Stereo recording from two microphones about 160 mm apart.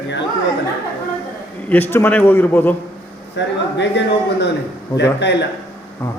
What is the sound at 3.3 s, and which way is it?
A man's voice, 90° left.